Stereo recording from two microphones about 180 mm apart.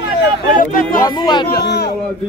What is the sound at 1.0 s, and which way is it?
Speech, 25° left (ahead or behind).